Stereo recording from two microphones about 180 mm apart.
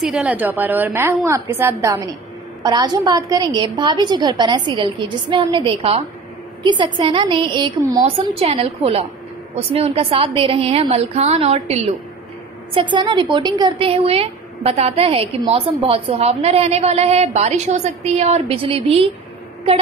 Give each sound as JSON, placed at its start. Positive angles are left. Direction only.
{"t": 0.0, "sound": "a woman's voice", "side_deg": -5}